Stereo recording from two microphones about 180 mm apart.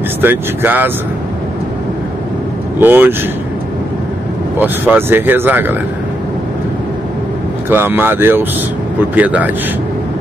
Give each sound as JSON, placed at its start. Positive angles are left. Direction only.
{"t": 0.2, "sound": "speech", "side_deg": -10}
{"t": 2.8, "sound": "speech", "side_deg": -10}
{"t": 4.6, "sound": "speech", "side_deg": -10}
{"t": 7.7, "sound": "speech", "side_deg": -10}